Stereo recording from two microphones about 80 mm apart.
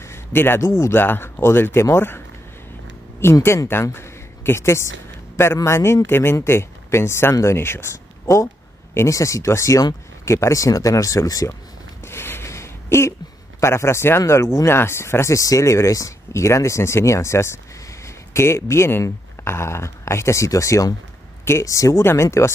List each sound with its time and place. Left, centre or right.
0.0 s speech: left
3.4 s speech: left
12.0 s a sound: left
13.6 s speech: left